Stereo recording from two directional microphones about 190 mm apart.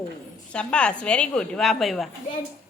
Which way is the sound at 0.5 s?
5° left (ahead or behind).